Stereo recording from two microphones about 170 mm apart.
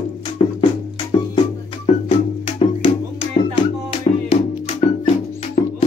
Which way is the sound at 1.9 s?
35° left (ahead or behind).